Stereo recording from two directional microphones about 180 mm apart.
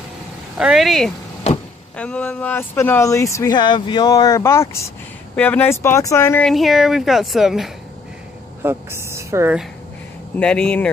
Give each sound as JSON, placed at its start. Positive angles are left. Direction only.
{"t": 0.6, "sound": "a woman's voice", "side_deg": -5}
{"t": 1.5, "sound": "vehicle", "side_deg": 35}
{"t": 2.0, "sound": "speech", "side_deg": 5}
{"t": 6.5, "sound": "a woman's voice", "side_deg": 0}
{"t": 8.6, "sound": "a woman's voice", "side_deg": -15}
{"t": 10.4, "sound": "a woman's voice", "side_deg": 5}